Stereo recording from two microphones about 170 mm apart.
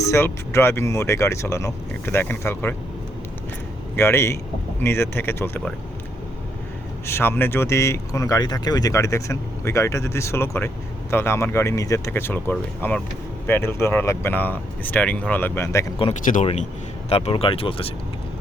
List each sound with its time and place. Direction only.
0.0 s speech: 15° left (ahead or behind)
3.9 s speech: 15° left (ahead or behind)
7.1 s speech: 15° left (ahead or behind)
16.2 s speech: 50° left (ahead or behind)
17.1 s speech: 35° left (ahead or behind)